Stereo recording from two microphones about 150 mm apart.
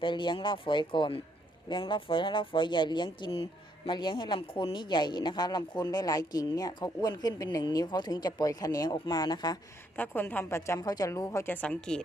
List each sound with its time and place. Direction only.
0.0 s speech: 30° left (ahead or behind)
9.9 s a woman's voice: 10° left (ahead or behind)